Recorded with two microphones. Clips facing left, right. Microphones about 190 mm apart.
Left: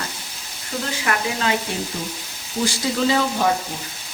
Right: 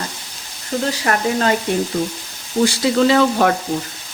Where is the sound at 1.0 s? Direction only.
40° right (ahead or behind).